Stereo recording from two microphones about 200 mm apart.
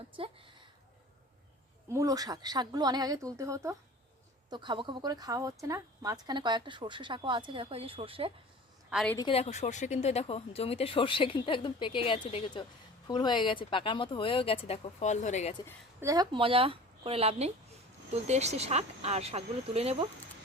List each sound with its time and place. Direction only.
0.2 s a woman's voice: 25° right (ahead or behind)
1.9 s a woman's voice: 15° right (ahead or behind)
8.9 s a woman's voice: centre (ahead or behind)
9.1 s a woman's voice: 25° left (ahead or behind)
16.0 s a woman's voice: 15° right (ahead or behind)